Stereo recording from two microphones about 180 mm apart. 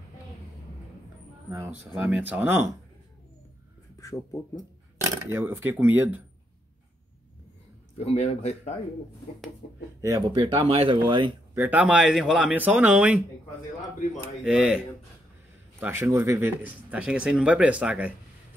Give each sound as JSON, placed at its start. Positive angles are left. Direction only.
{"t": 1.5, "sound": "speech", "side_deg": -15}
{"t": 1.9, "sound": "speech", "side_deg": -5}
{"t": 4.0, "sound": "speech", "side_deg": 15}
{"t": 5.2, "sound": "speech", "side_deg": -15}
{"t": 8.0, "sound": "speech", "side_deg": 35}
{"t": 9.6, "sound": "speech", "side_deg": 55}
{"t": 10.0, "sound": "speech", "side_deg": -20}
{"t": 11.5, "sound": "speech", "side_deg": -10}
{"t": 14.4, "sound": "speech", "side_deg": -5}
{"t": 15.8, "sound": "speech", "side_deg": -15}